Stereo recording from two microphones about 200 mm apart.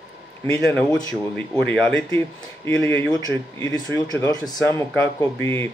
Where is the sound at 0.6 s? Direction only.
5° left (ahead or behind).